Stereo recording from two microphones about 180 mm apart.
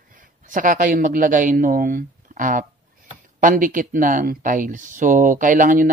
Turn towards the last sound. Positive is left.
turn(degrees=-50)  # may be behind; listen again after turning